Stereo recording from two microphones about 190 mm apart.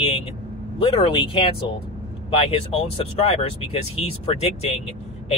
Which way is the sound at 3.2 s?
30° left (ahead or behind).